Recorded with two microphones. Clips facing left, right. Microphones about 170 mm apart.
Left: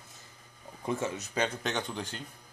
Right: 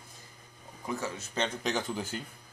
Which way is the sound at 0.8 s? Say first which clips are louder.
Left 3 dB; 25° left (ahead or behind).